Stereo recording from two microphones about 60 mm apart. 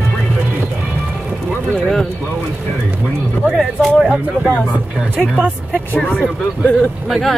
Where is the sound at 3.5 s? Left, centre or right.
Centre.